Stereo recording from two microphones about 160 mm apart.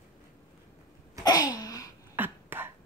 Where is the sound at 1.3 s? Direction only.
25° left (ahead or behind).